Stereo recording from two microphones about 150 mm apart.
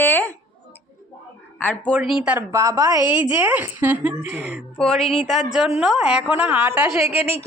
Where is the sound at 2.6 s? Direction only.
25° right (ahead or behind).